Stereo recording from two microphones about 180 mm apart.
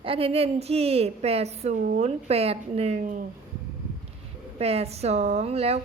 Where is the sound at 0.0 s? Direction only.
30° right (ahead or behind); by 3.2 s 45° right (ahead or behind).